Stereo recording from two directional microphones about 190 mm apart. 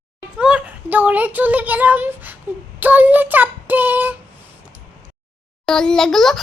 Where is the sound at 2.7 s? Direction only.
10° right (ahead or behind).